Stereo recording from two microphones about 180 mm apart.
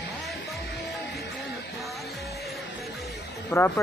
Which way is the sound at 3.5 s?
15° left (ahead or behind).